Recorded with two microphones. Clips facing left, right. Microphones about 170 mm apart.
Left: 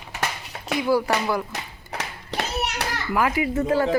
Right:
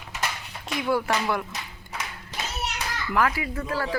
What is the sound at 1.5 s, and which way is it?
Hands, 70° left (ahead or behind).